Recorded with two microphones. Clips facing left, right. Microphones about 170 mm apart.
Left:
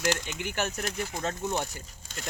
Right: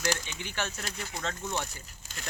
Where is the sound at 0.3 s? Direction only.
50° left (ahead or behind).